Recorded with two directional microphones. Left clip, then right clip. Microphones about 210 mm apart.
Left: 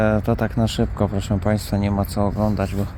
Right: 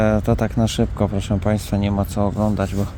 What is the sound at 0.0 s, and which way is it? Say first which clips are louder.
Speech: right 1 dB; 10° right (ahead or behind).